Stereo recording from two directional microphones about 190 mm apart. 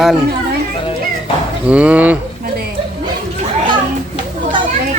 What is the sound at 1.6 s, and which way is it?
Speech, 5° right (ahead or behind).